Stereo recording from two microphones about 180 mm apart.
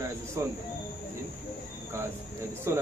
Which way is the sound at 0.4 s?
15° right (ahead or behind).